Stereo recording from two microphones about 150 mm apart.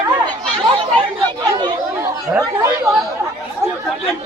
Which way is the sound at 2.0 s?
20° right (ahead or behind).